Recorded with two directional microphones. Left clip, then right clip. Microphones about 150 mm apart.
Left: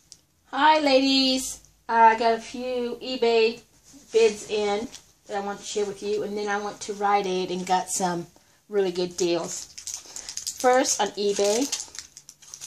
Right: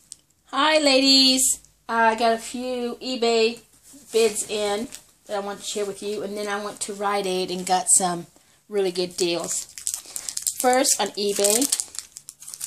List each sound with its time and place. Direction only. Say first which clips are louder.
0.5 s speech: even; 15° right (ahead or behind)
10.2 s a sound: right 3 dB; 10° right (ahead or behind)
10.6 s speech: even; 15° right (ahead or behind)